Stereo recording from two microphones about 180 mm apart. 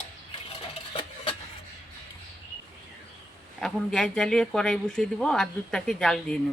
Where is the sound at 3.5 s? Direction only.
5° left (ahead or behind).